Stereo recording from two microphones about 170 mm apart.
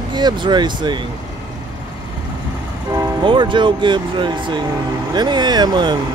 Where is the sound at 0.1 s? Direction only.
25° right (ahead or behind).